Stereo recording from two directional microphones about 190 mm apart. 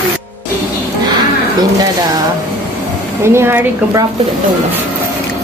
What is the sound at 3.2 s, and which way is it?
Speech, 15° right (ahead or behind).